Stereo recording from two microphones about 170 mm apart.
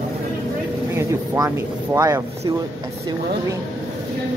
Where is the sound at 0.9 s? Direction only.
15° right (ahead or behind).